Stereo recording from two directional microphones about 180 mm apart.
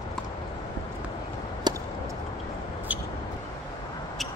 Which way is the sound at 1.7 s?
25° right (ahead or behind).